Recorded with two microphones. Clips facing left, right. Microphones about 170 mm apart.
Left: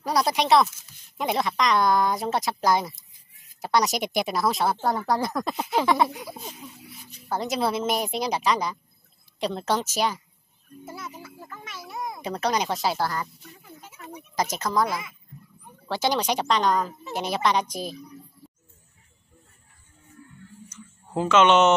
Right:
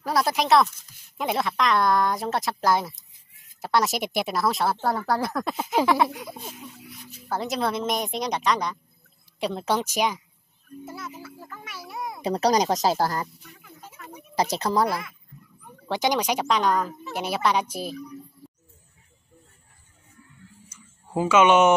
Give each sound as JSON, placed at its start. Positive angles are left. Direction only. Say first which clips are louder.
{"t": 0.0, "sound": "speech", "louder": "even", "side_deg": 0}
{"t": 9.4, "sound": "speech", "louder": "even", "side_deg": -10}
{"t": 10.9, "sound": "music", "louder": "even", "side_deg": 0}
{"t": 12.2, "sound": "speech", "louder": "right 5 dB", "side_deg": -35}
{"t": 13.5, "sound": "a sound", "louder": "left 2 dB", "side_deg": 30}
{"t": 14.3, "sound": "speech", "louder": "right 2 dB", "side_deg": -35}
{"t": 15.9, "sound": "speech", "louder": "right 1 dB", "side_deg": -15}
{"t": 20.6, "sound": "a sound", "louder": "left 6 dB", "side_deg": -10}